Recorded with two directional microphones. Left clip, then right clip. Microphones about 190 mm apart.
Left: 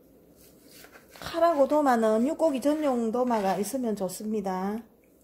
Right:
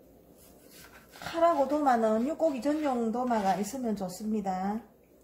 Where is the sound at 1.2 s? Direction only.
55° left (ahead or behind).